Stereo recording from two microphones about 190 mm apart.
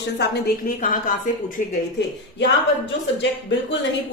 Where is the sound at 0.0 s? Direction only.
55° left (ahead or behind).